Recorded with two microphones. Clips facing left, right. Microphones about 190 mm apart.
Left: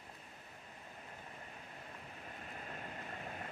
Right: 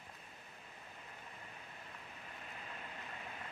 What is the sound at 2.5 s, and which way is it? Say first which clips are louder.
Vehicle: left 4 dB; 45° left (ahead or behind).